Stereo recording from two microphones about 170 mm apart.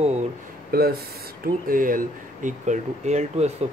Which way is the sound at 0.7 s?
65° right (ahead or behind).